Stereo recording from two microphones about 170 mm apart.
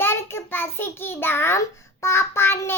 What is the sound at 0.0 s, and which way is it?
A child's voice, 15° left (ahead or behind).